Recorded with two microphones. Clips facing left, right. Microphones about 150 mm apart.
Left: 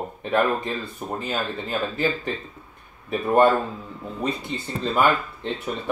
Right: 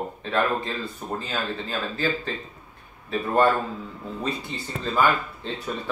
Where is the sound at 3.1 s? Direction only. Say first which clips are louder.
Left 3 dB; 20° left (ahead or behind).